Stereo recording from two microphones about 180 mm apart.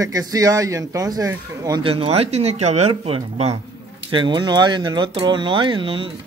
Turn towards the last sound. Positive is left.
turn(degrees=-30)  # may be behind; listen again after turning